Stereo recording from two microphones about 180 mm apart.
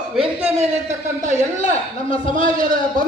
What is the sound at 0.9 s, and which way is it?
A man's voice, 45° right (ahead or behind).